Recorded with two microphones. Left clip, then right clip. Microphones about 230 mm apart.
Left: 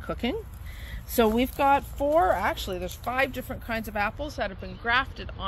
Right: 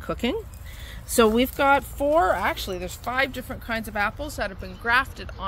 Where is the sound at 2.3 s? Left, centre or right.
Centre.